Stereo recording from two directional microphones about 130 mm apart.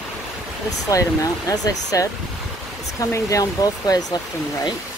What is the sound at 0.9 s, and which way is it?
Speech, 25° left (ahead or behind).